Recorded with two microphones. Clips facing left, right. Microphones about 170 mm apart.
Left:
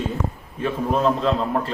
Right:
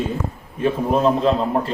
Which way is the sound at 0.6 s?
20° right (ahead or behind).